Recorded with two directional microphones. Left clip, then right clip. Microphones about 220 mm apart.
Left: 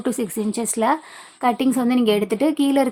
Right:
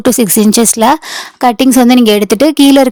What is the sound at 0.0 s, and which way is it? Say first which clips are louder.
A woman's voice: right 15 dB; 50° right (ahead or behind).